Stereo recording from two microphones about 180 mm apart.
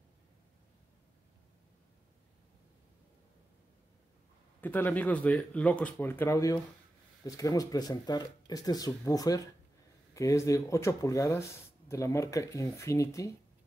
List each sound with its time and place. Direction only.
4.6 s speech: 10° left (ahead or behind)